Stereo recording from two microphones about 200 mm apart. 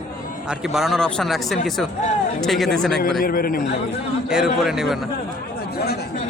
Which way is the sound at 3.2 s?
45° left (ahead or behind).